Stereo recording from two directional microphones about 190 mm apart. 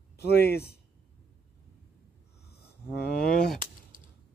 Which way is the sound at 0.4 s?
10° left (ahead or behind).